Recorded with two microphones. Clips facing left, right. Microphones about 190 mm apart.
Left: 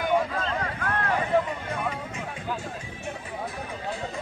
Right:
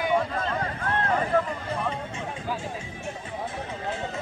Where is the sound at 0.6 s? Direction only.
25° right (ahead or behind).